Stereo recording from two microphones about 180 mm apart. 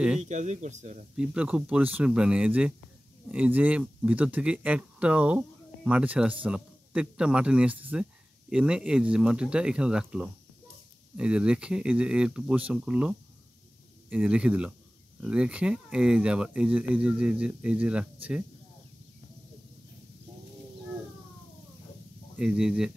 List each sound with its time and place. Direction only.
0.2 s speech: 40° right (ahead or behind)
1.1 s speech: 5° right (ahead or behind)
22.4 s speech: 5° right (ahead or behind)